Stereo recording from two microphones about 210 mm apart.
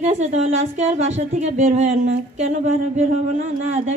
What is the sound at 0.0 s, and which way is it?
A woman's voice, 35° right (ahead or behind).